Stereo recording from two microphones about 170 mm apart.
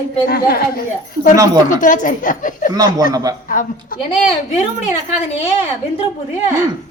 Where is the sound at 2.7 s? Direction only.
20° right (ahead or behind).